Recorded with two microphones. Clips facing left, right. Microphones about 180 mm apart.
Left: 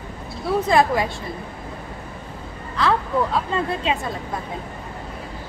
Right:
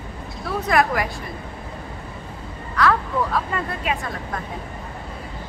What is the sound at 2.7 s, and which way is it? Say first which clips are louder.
A woman's voice: even; 25° left (ahead or behind).